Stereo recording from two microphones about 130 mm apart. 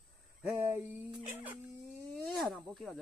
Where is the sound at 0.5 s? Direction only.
20° right (ahead or behind).